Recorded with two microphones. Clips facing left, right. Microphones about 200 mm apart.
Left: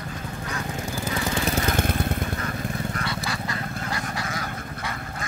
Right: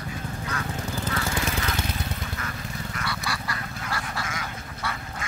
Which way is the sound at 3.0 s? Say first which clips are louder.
Left 2 dB; 20° left (ahead or behind).